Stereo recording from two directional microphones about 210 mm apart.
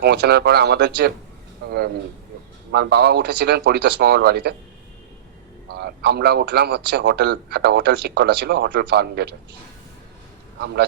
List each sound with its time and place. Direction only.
0.0 s a man's voice: 50° right (ahead or behind)
2.7 s a man's voice: 50° right (ahead or behind)
5.6 s a man's voice: 50° right (ahead or behind)